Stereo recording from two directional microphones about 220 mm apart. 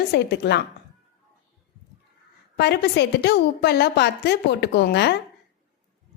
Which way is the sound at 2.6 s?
50° left (ahead or behind).